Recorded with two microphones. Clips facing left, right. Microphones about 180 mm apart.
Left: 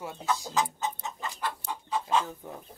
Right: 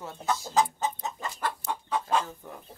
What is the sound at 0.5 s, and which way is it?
Chicken, 40° right (ahead or behind).